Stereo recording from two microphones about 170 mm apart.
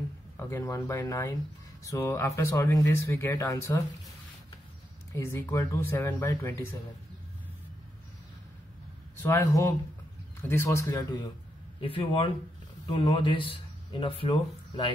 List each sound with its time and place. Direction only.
0.4 s speech: 15° left (ahead or behind)
5.1 s speech: 15° left (ahead or behind)
9.2 s speech: 15° left (ahead or behind)
11.8 s speech: 30° left (ahead or behind)